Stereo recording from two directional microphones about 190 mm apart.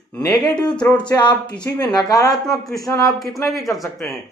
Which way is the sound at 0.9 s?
25° left (ahead or behind).